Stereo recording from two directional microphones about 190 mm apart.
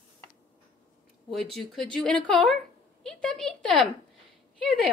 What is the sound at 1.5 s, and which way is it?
A woman's voice, centre (ahead or behind).